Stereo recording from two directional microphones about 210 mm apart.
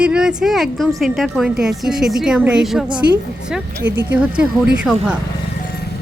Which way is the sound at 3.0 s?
55° right (ahead or behind).